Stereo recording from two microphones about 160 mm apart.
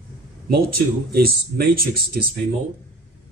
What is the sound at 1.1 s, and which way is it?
Speech, 70° right (ahead or behind).